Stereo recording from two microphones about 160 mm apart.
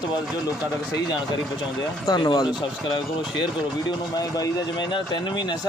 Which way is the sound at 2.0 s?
25° left (ahead or behind).